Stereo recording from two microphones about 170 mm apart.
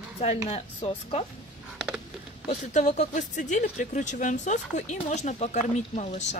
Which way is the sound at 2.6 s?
45° left (ahead or behind).